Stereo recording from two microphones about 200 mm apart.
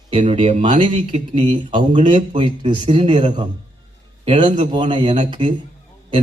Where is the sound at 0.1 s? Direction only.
30° right (ahead or behind).